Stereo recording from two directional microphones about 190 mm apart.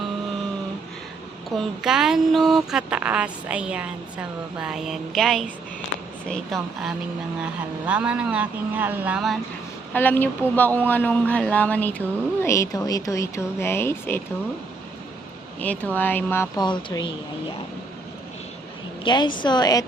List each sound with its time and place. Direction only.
1.5 s speech: centre (ahead or behind)
9.9 s speech: 10° left (ahead or behind)
15.6 s speech: 10° left (ahead or behind)
16.6 s a woman's voice: 25° left (ahead or behind)
19.0 s a woman's voice: 25° left (ahead or behind)